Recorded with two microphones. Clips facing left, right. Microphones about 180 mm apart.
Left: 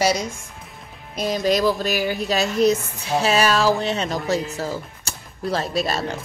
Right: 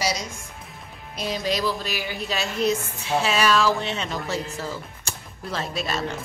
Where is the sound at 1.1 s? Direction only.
45° left (ahead or behind).